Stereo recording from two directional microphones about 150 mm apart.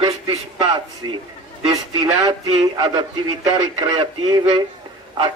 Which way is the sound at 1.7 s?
30° right (ahead or behind).